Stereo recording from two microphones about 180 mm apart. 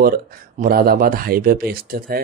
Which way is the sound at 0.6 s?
55° right (ahead or behind).